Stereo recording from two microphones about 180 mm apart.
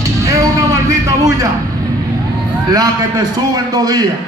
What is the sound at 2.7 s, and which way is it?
A man's voice, 20° right (ahead or behind).